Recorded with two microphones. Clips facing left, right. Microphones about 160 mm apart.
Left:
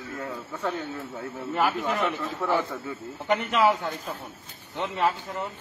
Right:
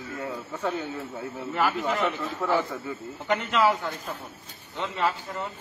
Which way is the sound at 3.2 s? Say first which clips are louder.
Left 1 dB; 20° left (ahead or behind).